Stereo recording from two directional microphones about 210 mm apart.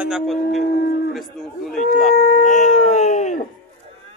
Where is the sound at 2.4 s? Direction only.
35° left (ahead or behind).